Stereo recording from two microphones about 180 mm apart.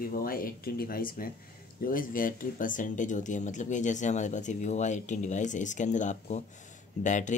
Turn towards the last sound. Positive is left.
turn(degrees=45)  # may be behind; listen again after turning